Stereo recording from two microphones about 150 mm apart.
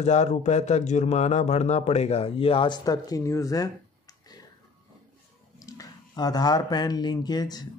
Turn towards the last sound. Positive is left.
turn(degrees=25)  # may be behind; listen again after turning